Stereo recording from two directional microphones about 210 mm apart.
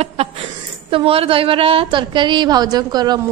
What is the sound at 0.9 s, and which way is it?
A woman's voice, 25° right (ahead or behind).